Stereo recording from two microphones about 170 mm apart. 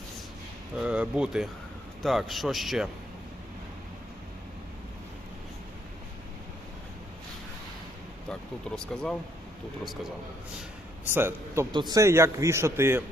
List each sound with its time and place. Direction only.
0.8 s a man's voice: 5° right (ahead or behind)
8.3 s speech: 5° left (ahead or behind)
11.0 s a man's voice: 10° right (ahead or behind)
11.7 s a man's voice: 25° right (ahead or behind)